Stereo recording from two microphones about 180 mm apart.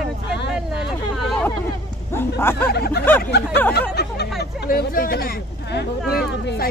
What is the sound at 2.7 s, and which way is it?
Speech, 60° left (ahead or behind).